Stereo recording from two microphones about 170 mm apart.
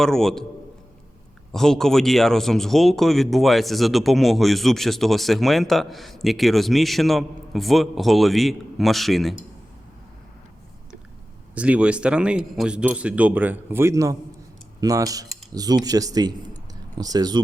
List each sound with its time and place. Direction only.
0.0 s speech: 5° left (ahead or behind)
1.5 s speech: 5° left (ahead or behind)
11.5 s speech: 5° right (ahead or behind); by 17.4 s 25° right (ahead or behind)